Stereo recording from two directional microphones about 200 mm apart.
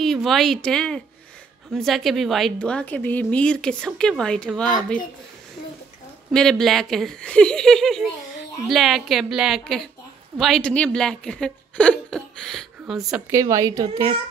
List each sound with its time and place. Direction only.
0.0 s a woman's voice: centre (ahead or behind)
6.3 s a woman's voice: centre (ahead or behind)
13.3 s a child's voice: 15° right (ahead or behind)